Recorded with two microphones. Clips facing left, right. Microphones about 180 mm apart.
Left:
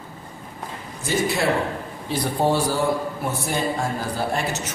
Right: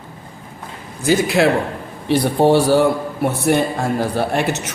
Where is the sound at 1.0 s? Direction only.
90° right.